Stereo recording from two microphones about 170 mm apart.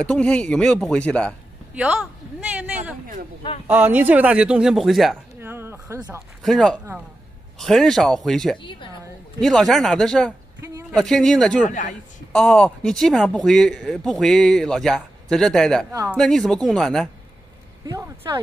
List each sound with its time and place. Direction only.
0.0 s speech: 5° left (ahead or behind)
1.8 s speech: 5° right (ahead or behind)
3.6 s speech: 10° right (ahead or behind)
5.4 s a sound: 15° right (ahead or behind)
6.4 s speech: centre (ahead or behind)
8.6 s a woman's voice: 30° left (ahead or behind)
9.4 s speech: centre (ahead or behind)
17.8 s speech: 20° right (ahead or behind)